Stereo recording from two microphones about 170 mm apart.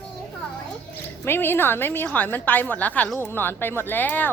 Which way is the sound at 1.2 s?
15° left (ahead or behind).